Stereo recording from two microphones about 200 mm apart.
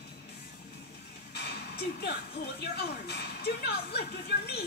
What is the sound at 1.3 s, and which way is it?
Music, 55° left (ahead or behind).